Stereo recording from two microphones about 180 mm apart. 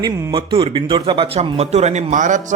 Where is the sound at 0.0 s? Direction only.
20° right (ahead or behind).